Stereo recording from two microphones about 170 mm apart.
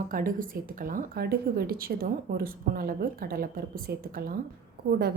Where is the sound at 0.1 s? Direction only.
55° right (ahead or behind).